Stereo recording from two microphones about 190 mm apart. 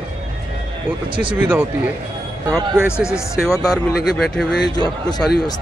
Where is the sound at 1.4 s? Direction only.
10° right (ahead or behind).